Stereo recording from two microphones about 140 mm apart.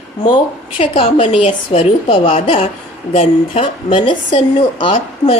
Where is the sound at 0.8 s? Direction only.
40° left (ahead or behind).